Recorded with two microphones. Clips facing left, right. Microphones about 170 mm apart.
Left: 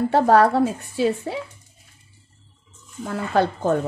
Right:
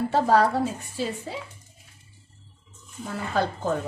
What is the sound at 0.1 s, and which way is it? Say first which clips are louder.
Speech: left 5 dB; 60° left (ahead or behind).